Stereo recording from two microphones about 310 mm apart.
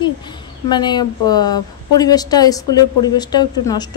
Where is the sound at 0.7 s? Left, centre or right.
Centre.